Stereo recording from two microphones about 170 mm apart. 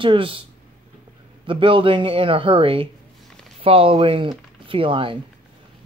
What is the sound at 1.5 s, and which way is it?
Speech, 30° right (ahead or behind).